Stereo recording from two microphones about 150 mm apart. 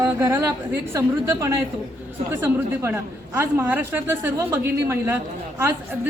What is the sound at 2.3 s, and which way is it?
A woman's voice, 15° right (ahead or behind).